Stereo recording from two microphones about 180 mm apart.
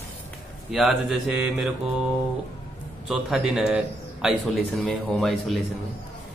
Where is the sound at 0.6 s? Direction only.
Centre (ahead or behind).